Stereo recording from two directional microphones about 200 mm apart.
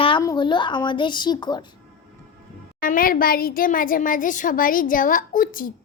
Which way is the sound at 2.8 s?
45° left (ahead or behind).